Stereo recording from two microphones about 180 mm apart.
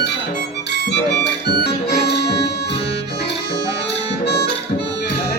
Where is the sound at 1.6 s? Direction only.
65° left (ahead or behind).